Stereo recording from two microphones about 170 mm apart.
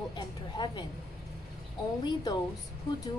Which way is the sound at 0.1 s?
25° left (ahead or behind).